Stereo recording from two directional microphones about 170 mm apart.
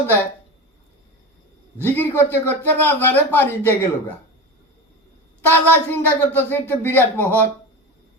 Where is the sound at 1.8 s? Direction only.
15° left (ahead or behind).